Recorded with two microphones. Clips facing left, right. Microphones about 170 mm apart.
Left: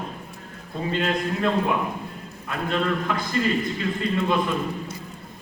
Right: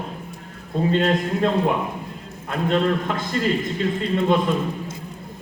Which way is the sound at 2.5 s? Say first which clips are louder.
Right 4 dB; 30° right (ahead or behind).